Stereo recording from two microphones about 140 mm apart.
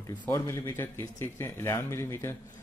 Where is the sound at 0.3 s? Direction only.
20° left (ahead or behind).